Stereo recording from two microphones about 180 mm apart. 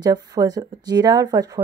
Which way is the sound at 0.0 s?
20° right (ahead or behind).